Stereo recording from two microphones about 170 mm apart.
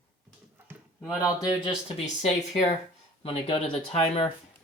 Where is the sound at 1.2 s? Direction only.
20° left (ahead or behind).